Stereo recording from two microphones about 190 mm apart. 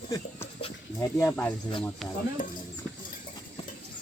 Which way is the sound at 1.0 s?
15° left (ahead or behind).